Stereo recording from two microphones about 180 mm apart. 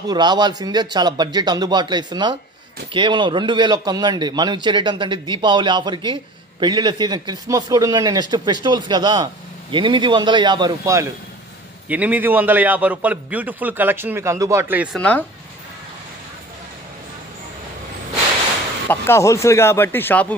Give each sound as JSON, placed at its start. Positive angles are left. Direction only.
{"t": 0.1, "sound": "speech", "side_deg": -25}
{"t": 11.9, "sound": "a man's voice", "side_deg": -10}
{"t": 15.0, "sound": "speech", "side_deg": 5}
{"t": 18.9, "sound": "speech", "side_deg": 15}